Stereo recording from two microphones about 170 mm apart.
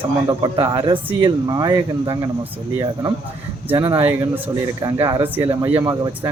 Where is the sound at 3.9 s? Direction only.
10° right (ahead or behind).